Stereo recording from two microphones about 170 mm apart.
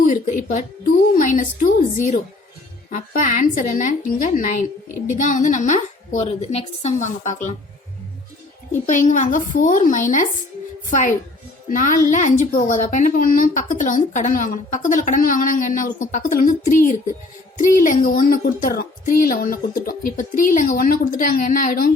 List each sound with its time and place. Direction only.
0.0 s a woman's voice: 50° left (ahead or behind)
8.9 s a woman's voice: 45° left (ahead or behind)
11.7 s a woman's voice: 50° left (ahead or behind)